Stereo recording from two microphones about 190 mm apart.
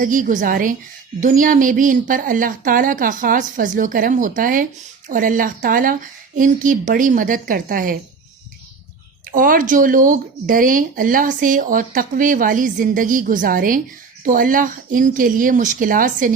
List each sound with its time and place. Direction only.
0.0 s speech: 45° right (ahead or behind)
9.2 s speech: 45° right (ahead or behind)